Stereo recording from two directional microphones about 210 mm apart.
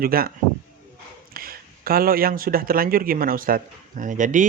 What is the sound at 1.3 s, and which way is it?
Speech, 45° right (ahead or behind).